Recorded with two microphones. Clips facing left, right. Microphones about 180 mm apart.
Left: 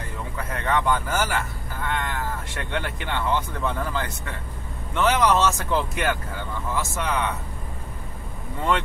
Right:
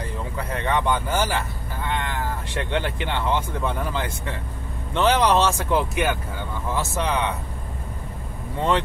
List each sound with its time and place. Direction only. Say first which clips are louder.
0.4 s speech: right 1 dB; 25° right (ahead or behind)
6.7 s speech: right 2 dB; 20° right (ahead or behind)